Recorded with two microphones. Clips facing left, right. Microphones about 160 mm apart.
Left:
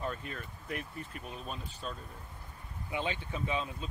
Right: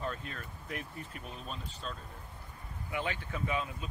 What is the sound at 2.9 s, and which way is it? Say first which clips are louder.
Speech: left 1 dB; 20° left (ahead or behind).